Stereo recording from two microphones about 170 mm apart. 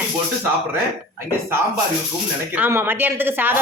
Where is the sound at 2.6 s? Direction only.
10° right (ahead or behind).